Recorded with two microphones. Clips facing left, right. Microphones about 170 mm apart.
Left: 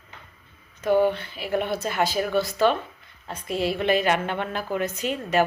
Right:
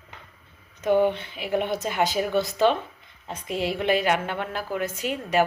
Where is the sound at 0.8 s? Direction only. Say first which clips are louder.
Even; 20° right (ahead or behind).